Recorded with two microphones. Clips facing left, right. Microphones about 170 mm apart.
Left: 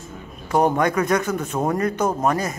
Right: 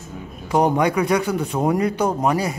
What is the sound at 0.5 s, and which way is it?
A man's voice, 15° right (ahead or behind).